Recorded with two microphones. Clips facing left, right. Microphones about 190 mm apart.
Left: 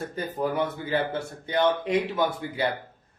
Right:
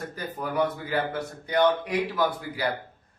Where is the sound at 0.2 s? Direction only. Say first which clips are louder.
Even; 25° left (ahead or behind).